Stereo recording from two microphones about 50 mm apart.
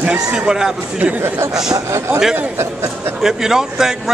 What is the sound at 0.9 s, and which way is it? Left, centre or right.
Speech, right.